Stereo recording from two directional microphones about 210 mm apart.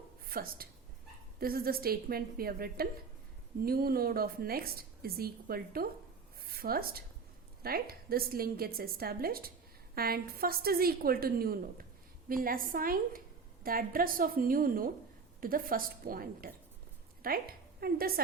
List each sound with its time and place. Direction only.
0.3 s a woman's voice: 45° right (ahead or behind)
6.4 s a sound: 45° right (ahead or behind)
7.6 s a woman's voice: 45° right (ahead or behind)